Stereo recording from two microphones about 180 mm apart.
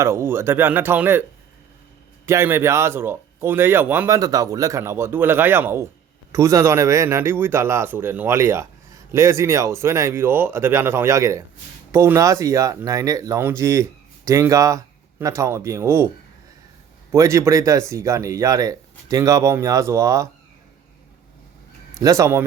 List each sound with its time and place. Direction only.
0.0 s speech: 15° right (ahead or behind)
2.2 s speech: 15° right (ahead or behind)
17.1 s speech: 15° right (ahead or behind)
22.0 s speech: 15° right (ahead or behind)